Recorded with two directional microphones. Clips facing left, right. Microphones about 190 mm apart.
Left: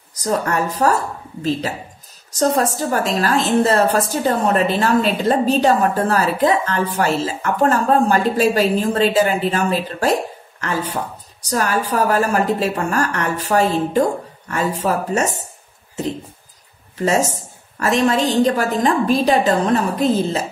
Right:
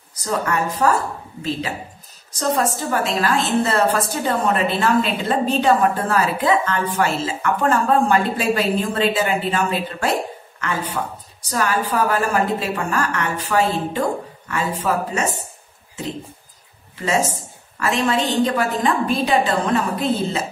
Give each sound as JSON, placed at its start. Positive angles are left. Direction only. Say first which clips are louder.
{"t": 0.2, "sound": "a woman's voice", "louder": "left 2 dB", "side_deg": 40}
{"t": 2.3, "sound": "a woman's voice", "louder": "left 3 dB", "side_deg": 40}
{"t": 11.5, "sound": "a woman's voice", "louder": "left 2 dB", "side_deg": 40}
{"t": 17.7, "sound": "a woman's voice", "louder": "left 3 dB", "side_deg": 40}